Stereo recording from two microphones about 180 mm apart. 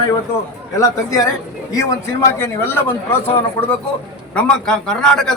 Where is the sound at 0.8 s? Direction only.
20° left (ahead or behind).